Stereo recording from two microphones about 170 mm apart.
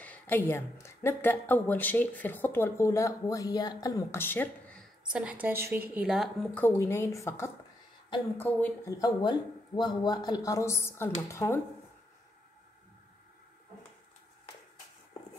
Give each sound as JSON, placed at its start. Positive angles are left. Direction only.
{"t": 0.0, "sound": "a woman's voice", "side_deg": 10}
{"t": 5.1, "sound": "a woman's voice", "side_deg": -10}
{"t": 6.6, "sound": "a woman's voice", "side_deg": 15}